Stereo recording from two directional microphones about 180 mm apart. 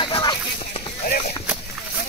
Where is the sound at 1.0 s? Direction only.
50° left (ahead or behind).